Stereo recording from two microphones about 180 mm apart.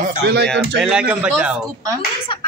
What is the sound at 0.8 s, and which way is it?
Speech, 5° right (ahead or behind).